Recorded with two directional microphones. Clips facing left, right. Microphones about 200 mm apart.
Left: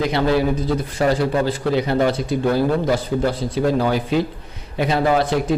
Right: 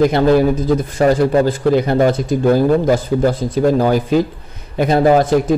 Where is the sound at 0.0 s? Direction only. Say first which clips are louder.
Right 6 dB; 45° right (ahead or behind).